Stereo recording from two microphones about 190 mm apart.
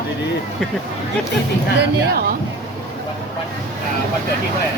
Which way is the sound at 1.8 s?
50° right (ahead or behind).